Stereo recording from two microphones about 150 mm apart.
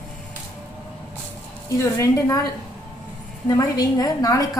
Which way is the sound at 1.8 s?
20° left (ahead or behind).